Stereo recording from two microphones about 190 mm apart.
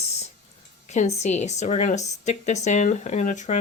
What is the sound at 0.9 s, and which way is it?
A woman's voice, 35° left (ahead or behind).